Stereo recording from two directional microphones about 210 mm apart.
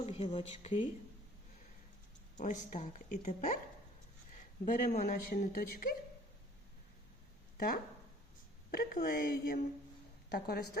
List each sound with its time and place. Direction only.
0.0 s speech: 30° left (ahead or behind)
2.4 s speech: 35° left (ahead or behind)
4.6 s speech: 40° left (ahead or behind)
7.5 s a sound: 45° left (ahead or behind)
8.7 s a woman's voice: 45° left (ahead or behind)